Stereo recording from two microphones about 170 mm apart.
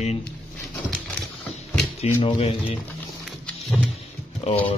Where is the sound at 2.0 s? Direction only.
35° left (ahead or behind).